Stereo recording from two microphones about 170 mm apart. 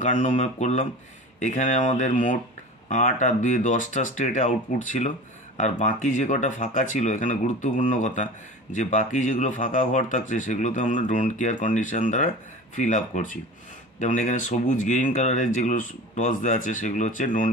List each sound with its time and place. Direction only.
0.0 s speech: 45° left (ahead or behind)